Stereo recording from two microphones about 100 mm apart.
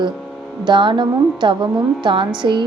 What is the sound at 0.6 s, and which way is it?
A woman's voice, 50° right (ahead or behind).